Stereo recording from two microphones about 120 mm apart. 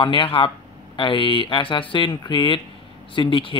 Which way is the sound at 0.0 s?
45° left (ahead or behind).